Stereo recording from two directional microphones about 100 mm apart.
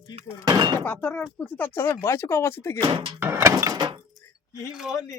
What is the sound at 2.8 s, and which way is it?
Speech, 50° right (ahead or behind).